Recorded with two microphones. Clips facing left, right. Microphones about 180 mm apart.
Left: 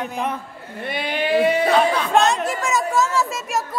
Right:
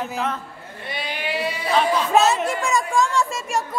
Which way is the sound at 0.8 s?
55° left (ahead or behind).